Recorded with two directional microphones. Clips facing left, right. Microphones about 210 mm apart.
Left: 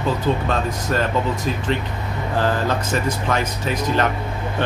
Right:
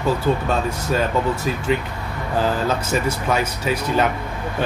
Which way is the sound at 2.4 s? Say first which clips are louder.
Even; 10° right (ahead or behind).